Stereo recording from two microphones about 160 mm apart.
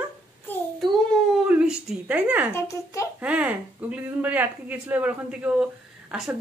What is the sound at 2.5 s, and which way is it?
Speech, 20° left (ahead or behind).